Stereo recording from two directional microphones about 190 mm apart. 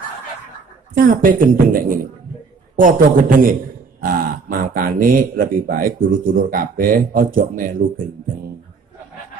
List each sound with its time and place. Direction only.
0.9 s speech: 45° right (ahead or behind)